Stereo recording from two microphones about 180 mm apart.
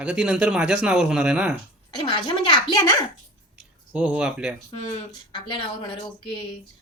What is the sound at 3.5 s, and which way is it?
Speech, 5° right (ahead or behind).